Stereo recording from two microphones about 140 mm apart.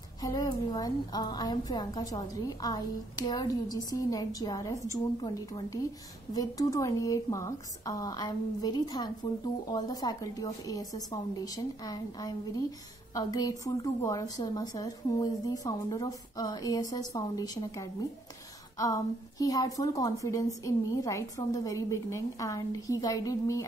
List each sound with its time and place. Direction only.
0.2 s speech: 25° left (ahead or behind)